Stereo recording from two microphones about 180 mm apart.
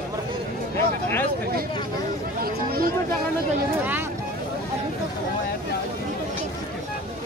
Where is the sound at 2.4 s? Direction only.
55° right (ahead or behind).